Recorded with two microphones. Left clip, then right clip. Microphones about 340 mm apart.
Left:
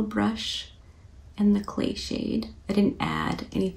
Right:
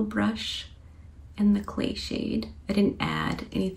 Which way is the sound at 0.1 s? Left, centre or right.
Centre.